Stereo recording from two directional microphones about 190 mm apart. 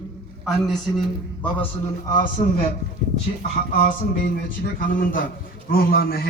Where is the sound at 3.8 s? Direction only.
45° left (ahead or behind).